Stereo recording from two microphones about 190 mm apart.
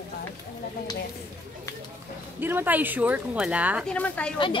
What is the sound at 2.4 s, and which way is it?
Speech, 10° right (ahead or behind).